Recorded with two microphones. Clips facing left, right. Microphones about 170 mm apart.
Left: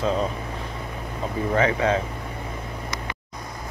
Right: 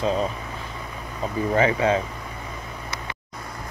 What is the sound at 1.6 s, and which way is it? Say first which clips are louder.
Speech: right 1 dB; 10° right (ahead or behind).